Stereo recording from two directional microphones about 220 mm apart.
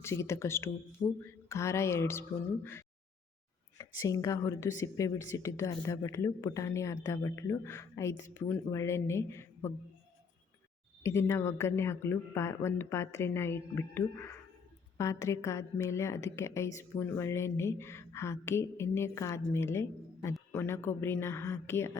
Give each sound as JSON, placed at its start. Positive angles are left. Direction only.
{"t": 0.0, "sound": "a woman's voice", "side_deg": 10}
{"t": 3.8, "sound": "a woman's voice", "side_deg": 15}
{"t": 11.0, "sound": "a woman's voice", "side_deg": 10}